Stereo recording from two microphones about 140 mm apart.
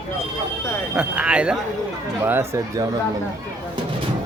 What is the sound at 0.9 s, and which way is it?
Speech, 5° right (ahead or behind).